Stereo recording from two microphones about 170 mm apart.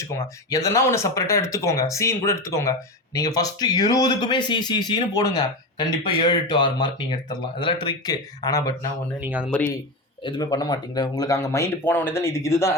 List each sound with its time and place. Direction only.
0.5 s speech: 20° left (ahead or behind)
9.2 s speech: 10° right (ahead or behind)
10.2 s speech: 25° left (ahead or behind)